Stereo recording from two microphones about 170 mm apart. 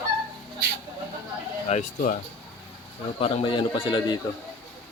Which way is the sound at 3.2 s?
30° left (ahead or behind).